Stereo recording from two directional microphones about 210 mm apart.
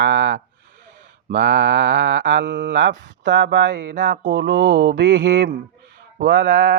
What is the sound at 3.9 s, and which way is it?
Speech, 35° right (ahead or behind).